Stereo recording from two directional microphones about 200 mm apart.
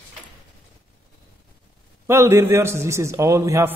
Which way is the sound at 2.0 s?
15° right (ahead or behind).